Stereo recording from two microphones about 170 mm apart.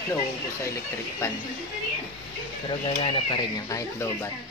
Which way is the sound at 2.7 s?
30° left (ahead or behind).